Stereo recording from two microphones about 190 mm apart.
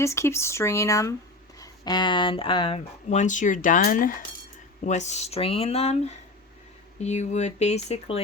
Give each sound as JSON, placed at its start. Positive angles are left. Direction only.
{"t": 0.0, "sound": "speech", "side_deg": 15}